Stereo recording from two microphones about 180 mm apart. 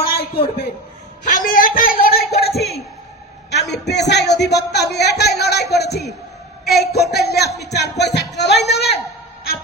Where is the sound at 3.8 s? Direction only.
70° left (ahead or behind).